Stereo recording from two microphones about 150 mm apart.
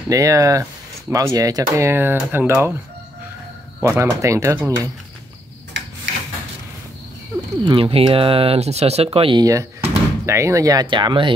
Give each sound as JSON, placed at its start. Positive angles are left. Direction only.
{"t": 0.1, "sound": "speech", "side_deg": -20}
{"t": 3.8, "sound": "speech", "side_deg": -20}
{"t": 7.6, "sound": "speech", "side_deg": -35}
{"t": 9.4, "sound": "speech", "side_deg": -20}